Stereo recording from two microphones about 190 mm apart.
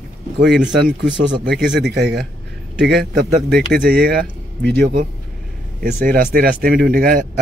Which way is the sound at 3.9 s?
55° right (ahead or behind).